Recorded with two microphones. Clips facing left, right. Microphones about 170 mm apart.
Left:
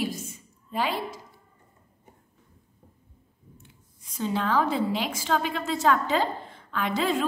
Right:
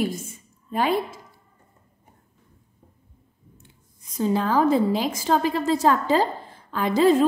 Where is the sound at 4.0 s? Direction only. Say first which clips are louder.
Right 5 dB; 40° right (ahead or behind).